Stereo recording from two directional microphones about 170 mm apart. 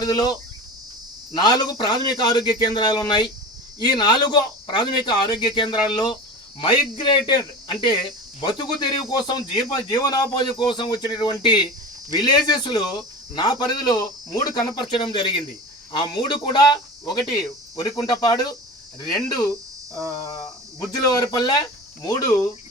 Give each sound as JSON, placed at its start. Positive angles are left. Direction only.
{"t": 0.0, "sound": "speech", "side_deg": 25}
{"t": 20.2, "sound": "speech", "side_deg": 25}